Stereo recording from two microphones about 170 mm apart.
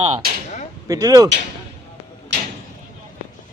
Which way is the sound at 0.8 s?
20° right (ahead or behind).